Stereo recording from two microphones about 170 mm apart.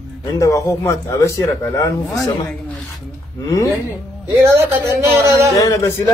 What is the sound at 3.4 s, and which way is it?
Speech, 20° left (ahead or behind).